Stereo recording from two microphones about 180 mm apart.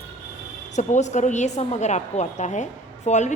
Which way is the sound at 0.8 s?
40° left (ahead or behind).